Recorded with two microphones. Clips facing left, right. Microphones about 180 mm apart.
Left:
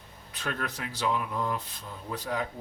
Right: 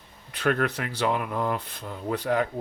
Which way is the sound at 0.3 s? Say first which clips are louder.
Right 10 dB; 65° right (ahead or behind).